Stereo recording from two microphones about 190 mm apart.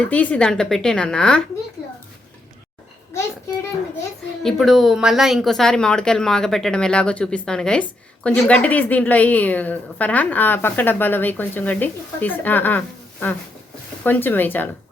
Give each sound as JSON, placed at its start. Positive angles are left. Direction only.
{"t": 0.0, "sound": "a woman's voice", "side_deg": 5}
{"t": 4.4, "sound": "speech", "side_deg": 0}